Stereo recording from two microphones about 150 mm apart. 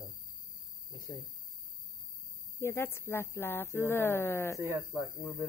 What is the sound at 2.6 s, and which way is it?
Speech, 15° left (ahead or behind).